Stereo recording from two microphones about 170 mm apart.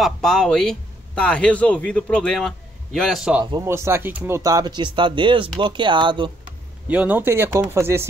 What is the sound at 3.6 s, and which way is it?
Speech, 15° right (ahead or behind).